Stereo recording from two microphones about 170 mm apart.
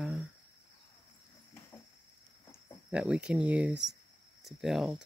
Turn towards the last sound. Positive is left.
turn(degrees=-5)  # may be behind; listen again after turning